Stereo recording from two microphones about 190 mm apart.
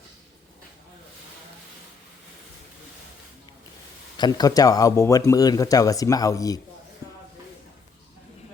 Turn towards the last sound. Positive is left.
turn(degrees=20)  # may be behind; listen again after turning